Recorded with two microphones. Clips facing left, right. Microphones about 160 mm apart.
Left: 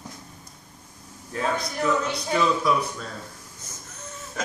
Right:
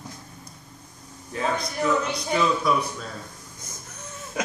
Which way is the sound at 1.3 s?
Centre (ahead or behind).